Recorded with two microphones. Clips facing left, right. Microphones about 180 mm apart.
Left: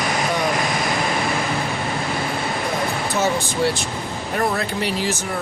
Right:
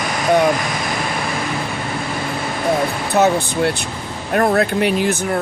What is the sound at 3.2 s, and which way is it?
Speech, 60° right (ahead or behind).